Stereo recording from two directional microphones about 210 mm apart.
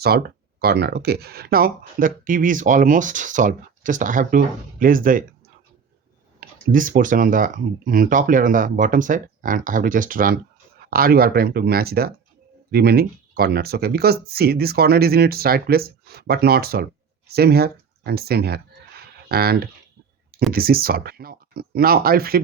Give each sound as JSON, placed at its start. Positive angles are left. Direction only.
{"t": 0.0, "sound": "speech", "side_deg": -50}
{"t": 6.4, "sound": "speech", "side_deg": -40}